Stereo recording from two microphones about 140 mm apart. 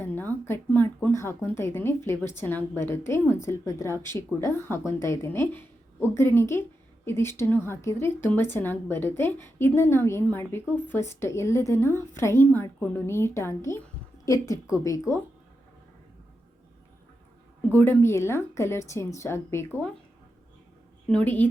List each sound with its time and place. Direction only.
0.0 s a sound: 15° left (ahead or behind)
1.0 s a woman's voice: 20° left (ahead or behind)
17.7 s a woman's voice: 15° left (ahead or behind)
21.1 s a woman's voice: 10° left (ahead or behind)